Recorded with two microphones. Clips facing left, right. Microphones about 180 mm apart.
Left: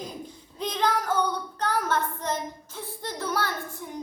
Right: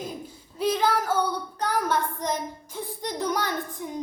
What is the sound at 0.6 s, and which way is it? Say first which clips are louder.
Child singing: right 3 dB; 5° right (ahead or behind).